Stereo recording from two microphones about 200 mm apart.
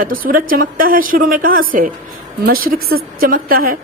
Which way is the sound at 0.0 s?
45° right (ahead or behind).